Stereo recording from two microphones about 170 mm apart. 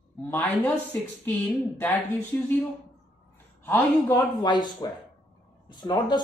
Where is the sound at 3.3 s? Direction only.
10° left (ahead or behind).